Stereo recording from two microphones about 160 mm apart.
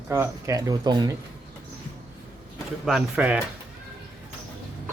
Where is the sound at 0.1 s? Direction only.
20° right (ahead or behind).